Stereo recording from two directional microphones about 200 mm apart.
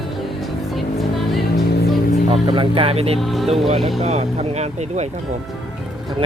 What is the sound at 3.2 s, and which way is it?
Speech, centre (ahead or behind).